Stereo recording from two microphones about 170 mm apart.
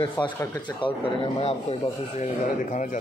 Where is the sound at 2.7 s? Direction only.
50° left (ahead or behind).